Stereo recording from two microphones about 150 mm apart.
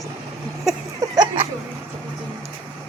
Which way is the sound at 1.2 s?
35° right (ahead or behind).